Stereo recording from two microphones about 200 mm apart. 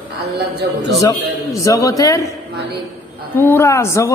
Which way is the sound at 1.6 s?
15° left (ahead or behind).